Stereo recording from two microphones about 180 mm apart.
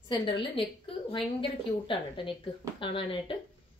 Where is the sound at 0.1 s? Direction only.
30° left (ahead or behind).